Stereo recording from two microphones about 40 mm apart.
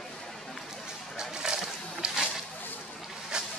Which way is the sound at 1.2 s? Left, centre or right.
Centre.